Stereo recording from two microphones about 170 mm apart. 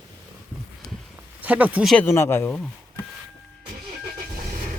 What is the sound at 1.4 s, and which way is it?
Speech, 10° right (ahead or behind).